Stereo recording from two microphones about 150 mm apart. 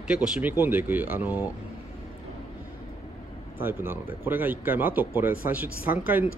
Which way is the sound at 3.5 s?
15° right (ahead or behind).